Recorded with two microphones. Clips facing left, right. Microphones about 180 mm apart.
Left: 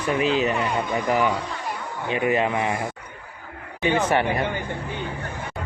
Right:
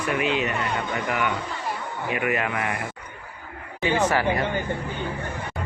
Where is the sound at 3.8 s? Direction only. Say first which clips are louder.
Left 1 dB; 25° left (ahead or behind).